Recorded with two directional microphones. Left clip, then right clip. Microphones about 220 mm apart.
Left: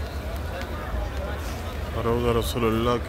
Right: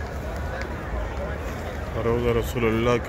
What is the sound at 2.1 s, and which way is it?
Speech, 15° left (ahead or behind).